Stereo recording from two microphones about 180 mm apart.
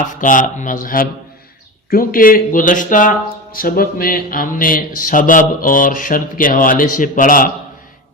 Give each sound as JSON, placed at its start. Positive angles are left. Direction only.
{"t": 0.1, "sound": "speech", "side_deg": 45}